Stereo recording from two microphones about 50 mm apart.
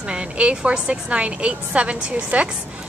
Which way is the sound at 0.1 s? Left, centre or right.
Centre.